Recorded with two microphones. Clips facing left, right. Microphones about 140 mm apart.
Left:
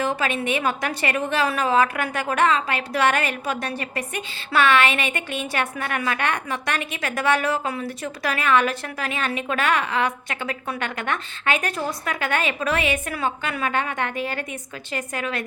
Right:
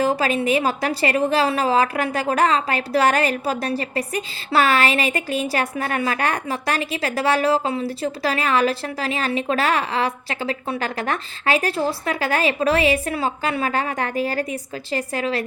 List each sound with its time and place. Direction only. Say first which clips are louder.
0.0 s a woman's voice: right 4 dB; 35° right (ahead or behind)